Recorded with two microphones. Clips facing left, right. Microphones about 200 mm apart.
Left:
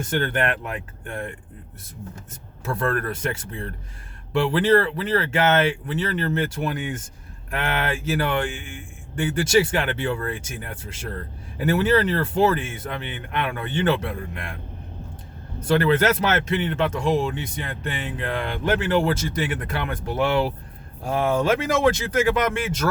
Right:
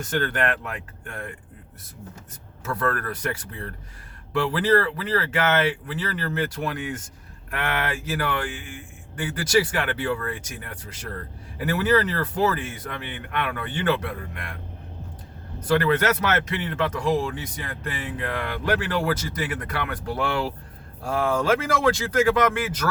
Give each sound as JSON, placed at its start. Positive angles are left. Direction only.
{"t": 0.1, "sound": "speech", "side_deg": 25}
{"t": 2.7, "sound": "speech", "side_deg": 25}
{"t": 15.6, "sound": "speech", "side_deg": 25}